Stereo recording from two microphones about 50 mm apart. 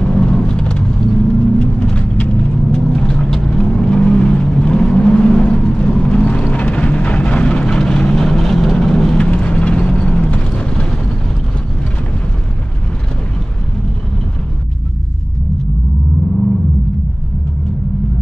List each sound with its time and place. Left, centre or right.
0.0 s vehicle: centre
8.2 s vehicle: centre
9.3 s vehicle: left